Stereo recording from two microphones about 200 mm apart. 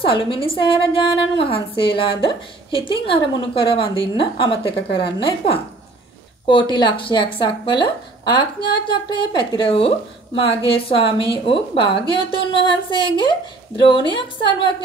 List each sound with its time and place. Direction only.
0.0 s a woman's voice: 25° left (ahead or behind)
4.6 s a woman's voice: 55° left (ahead or behind)
5.2 s a woman's voice: 25° left (ahead or behind)